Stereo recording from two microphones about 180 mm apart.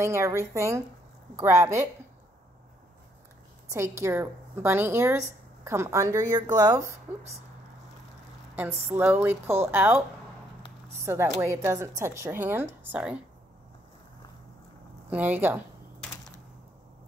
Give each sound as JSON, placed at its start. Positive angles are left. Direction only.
{"t": 0.0, "sound": "a woman's voice", "side_deg": -15}
{"t": 3.6, "sound": "a woman's voice", "side_deg": -15}
{"t": 8.9, "sound": "a woman's voice", "side_deg": -10}
{"t": 15.0, "sound": "a woman's voice", "side_deg": -10}